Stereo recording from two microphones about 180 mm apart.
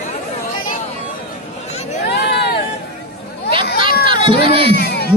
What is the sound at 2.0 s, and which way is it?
Hubbub, 65° left (ahead or behind).